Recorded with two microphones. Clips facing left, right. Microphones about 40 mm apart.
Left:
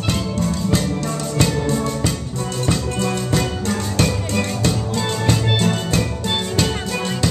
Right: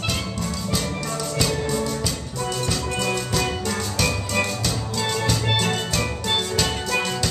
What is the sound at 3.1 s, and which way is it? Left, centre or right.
Music, centre.